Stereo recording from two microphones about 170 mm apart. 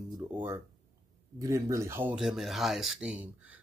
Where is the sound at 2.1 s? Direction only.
5° right (ahead or behind).